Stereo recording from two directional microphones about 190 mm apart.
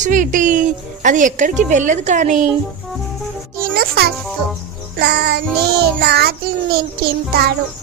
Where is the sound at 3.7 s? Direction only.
50° right (ahead or behind).